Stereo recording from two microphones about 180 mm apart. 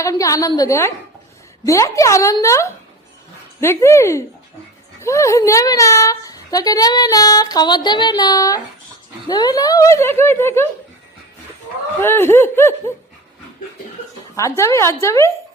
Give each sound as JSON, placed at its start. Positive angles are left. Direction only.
{"t": 0.0, "sound": "a woman's voice", "side_deg": 20}
{"t": 12.0, "sound": "speech", "side_deg": 10}
{"t": 14.3, "sound": "speech", "side_deg": 15}